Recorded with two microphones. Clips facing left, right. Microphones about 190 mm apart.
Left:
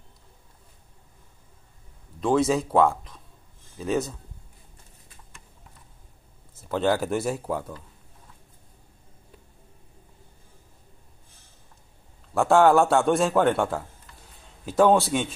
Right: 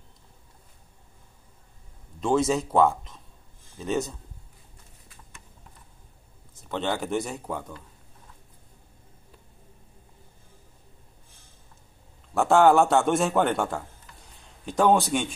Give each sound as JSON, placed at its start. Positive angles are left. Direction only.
{"t": 2.1, "sound": "a man's voice", "side_deg": 0}
{"t": 6.7, "sound": "a man's voice", "side_deg": 5}
{"t": 12.4, "sound": "a man's voice", "side_deg": 0}